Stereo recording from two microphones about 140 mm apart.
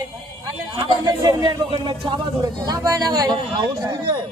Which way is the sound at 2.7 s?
30° right (ahead or behind).